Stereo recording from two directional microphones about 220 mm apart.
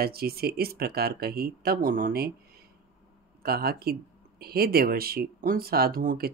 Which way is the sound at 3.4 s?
45° right (ahead or behind).